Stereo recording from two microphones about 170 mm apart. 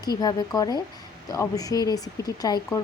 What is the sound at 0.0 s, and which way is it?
Speech, 25° left (ahead or behind).